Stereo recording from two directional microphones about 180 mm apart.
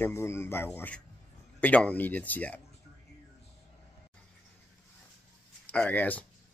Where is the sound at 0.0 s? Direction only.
15° left (ahead or behind).